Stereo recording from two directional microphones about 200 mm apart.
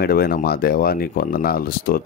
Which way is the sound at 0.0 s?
50° left (ahead or behind).